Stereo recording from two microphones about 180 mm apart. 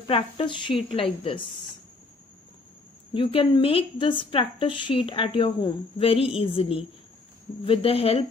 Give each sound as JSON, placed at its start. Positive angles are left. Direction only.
{"t": 0.0, "sound": "a woman's voice", "side_deg": 30}
{"t": 3.1, "sound": "speech", "side_deg": 30}